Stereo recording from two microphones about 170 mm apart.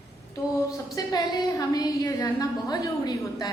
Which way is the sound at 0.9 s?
20° left (ahead or behind).